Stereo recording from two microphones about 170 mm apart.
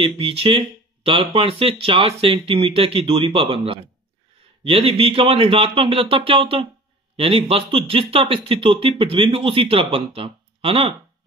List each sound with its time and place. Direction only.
0.2 s speech: 35° right (ahead or behind)